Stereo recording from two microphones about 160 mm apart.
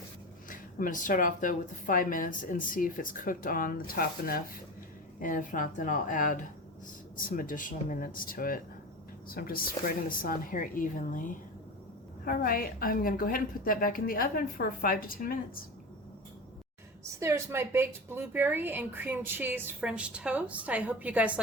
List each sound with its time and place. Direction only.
0.5 s speech: 60° left (ahead or behind)
5.2 s speech: 55° left (ahead or behind)
17.2 s speech: 15° right (ahead or behind)